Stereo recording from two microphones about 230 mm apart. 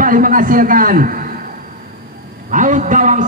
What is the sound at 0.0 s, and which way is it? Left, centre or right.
A man's voice, right.